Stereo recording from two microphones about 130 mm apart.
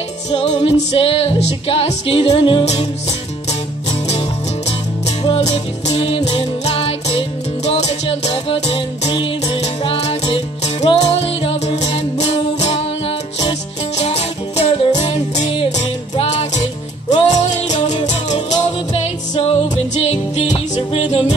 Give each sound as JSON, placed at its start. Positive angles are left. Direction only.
{"t": 0.3, "sound": "music", "side_deg": 55}
{"t": 2.6, "sound": "music", "side_deg": 55}
{"t": 5.2, "sound": "music", "side_deg": 45}